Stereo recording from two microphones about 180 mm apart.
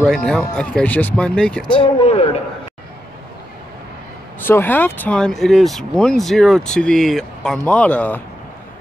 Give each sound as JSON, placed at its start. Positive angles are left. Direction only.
{"t": 0.0, "sound": "speech", "side_deg": 5}
{"t": 1.7, "sound": "speech", "side_deg": 30}
{"t": 4.5, "sound": "speech", "side_deg": 10}